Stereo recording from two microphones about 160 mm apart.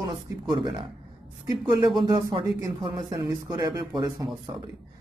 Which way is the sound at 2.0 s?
25° right (ahead or behind).